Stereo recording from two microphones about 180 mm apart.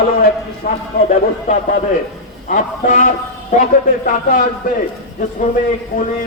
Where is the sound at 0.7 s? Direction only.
55° left (ahead or behind).